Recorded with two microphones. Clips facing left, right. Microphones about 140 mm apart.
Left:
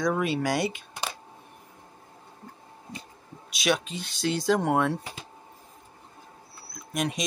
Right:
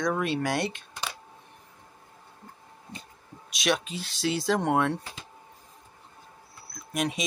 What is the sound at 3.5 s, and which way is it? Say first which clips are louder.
Speech: left 1 dB; centre (ahead or behind).